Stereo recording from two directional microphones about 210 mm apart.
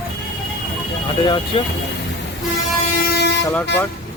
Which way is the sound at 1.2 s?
20° left (ahead or behind).